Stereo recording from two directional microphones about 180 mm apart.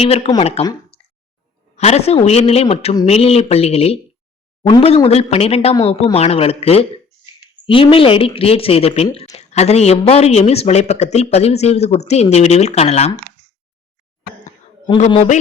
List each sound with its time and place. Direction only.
0.0 s a woman's voice: 35° left (ahead or behind)
0.6 s a sound: 25° left (ahead or behind)
1.7 s a woman's voice: 35° left (ahead or behind)
15.1 s a woman's voice: 40° left (ahead or behind)